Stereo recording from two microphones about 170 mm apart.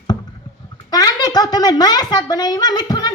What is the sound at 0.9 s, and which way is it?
A woman's voice, 25° left (ahead or behind).